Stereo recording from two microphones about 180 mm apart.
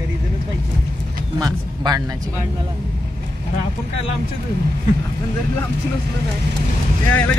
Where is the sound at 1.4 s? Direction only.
20° right (ahead or behind).